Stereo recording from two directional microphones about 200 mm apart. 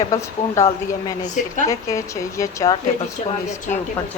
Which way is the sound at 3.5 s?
35° left (ahead or behind).